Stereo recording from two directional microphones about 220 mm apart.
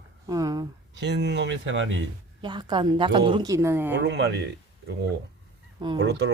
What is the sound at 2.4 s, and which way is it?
A woman's voice, 20° right (ahead or behind).